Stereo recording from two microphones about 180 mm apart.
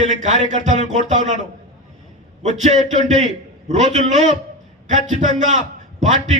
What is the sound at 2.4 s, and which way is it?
A man's voice, 40° right (ahead or behind).